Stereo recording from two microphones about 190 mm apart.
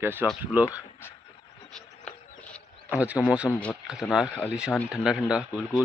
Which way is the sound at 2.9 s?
5° right (ahead or behind).